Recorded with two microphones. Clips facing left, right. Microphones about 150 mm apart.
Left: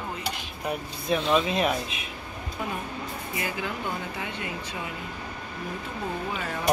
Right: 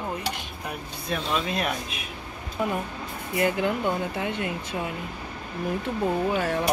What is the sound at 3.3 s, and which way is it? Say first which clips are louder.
Speech: right 9 dB; 55° right (ahead or behind).